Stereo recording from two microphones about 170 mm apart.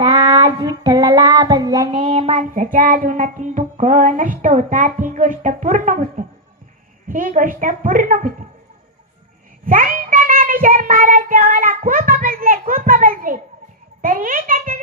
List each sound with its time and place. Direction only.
0.0 s child singing: 25° right (ahead or behind)
1.9 s child singing: 35° right (ahead or behind)
2.7 s music: 55° right (ahead or behind)
9.6 s child singing: 55° right (ahead or behind)
14.0 s a child's voice: 55° right (ahead or behind)